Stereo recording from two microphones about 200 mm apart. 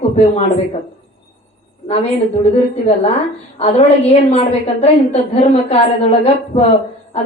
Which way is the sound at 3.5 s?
30° left (ahead or behind).